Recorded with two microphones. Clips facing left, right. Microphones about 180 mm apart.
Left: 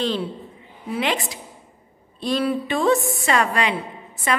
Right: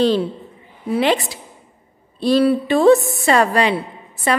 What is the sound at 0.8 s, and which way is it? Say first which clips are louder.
A woman's voice: right 7 dB; 35° right (ahead or behind).